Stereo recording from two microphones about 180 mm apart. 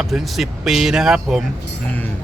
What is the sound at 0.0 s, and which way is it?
Speech, centre (ahead or behind).